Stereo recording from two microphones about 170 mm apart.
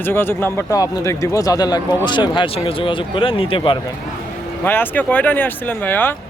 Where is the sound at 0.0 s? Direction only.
10° left (ahead or behind); by 3.8 s 30° left (ahead or behind).